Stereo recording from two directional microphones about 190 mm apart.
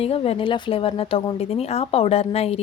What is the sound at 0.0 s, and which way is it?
Speech, 30° left (ahead or behind).